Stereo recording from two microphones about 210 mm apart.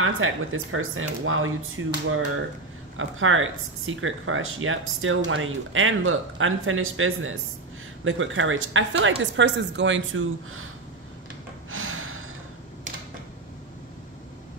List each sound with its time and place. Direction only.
0.0 s speech: 70° right (ahead or behind)
3.0 s speech: 70° right (ahead or behind)
11.7 s gasp: 75° right (ahead or behind)